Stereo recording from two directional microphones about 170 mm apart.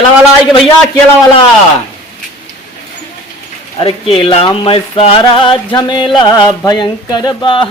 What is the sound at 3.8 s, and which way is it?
Speech, 30° left (ahead or behind).